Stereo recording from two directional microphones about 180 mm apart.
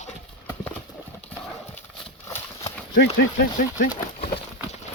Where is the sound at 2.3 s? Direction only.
15° left (ahead or behind).